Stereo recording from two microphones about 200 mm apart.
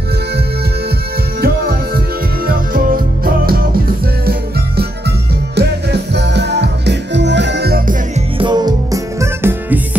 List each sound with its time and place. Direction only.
1.4 s music: 50° right (ahead or behind)
5.6 s music: 55° right (ahead or behind)
8.4 s music: 20° right (ahead or behind)